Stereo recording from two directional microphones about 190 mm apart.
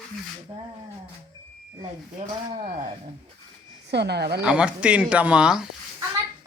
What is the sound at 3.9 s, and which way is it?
Speech, 60° right (ahead or behind).